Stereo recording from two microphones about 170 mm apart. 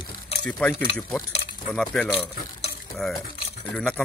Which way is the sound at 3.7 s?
5° left (ahead or behind).